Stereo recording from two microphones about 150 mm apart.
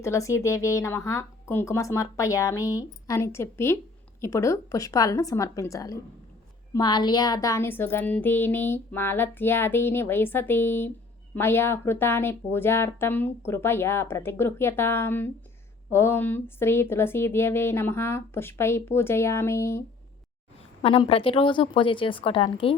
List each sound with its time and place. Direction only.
0.0 s a woman's voice: 20° left (ahead or behind)
21.1 s a woman's voice: 40° left (ahead or behind)